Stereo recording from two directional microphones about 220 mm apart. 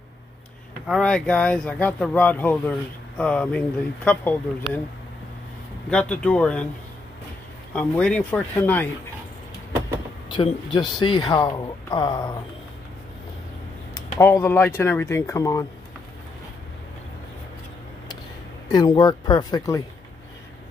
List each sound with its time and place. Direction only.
0.8 s speech: 5° left (ahead or behind)
5.9 s speech: 5° left (ahead or behind)
7.7 s speech: 5° left (ahead or behind)
10.3 s speech: 20° left (ahead or behind)
14.1 s speech: 10° left (ahead or behind)
18.7 s speech: 20° left (ahead or behind)